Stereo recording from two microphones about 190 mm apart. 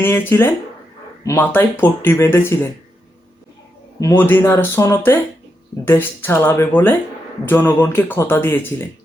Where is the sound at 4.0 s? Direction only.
10° left (ahead or behind).